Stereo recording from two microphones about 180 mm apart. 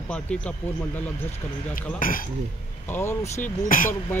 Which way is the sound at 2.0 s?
50° left (ahead or behind).